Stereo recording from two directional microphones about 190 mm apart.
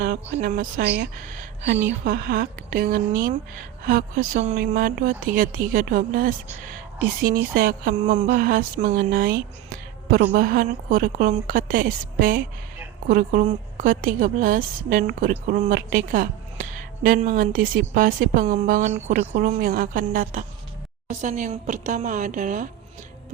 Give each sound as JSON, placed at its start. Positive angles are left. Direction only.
{"t": 0.3, "sound": "a woman's voice", "side_deg": -45}
{"t": 8.3, "sound": "a woman's voice", "side_deg": -50}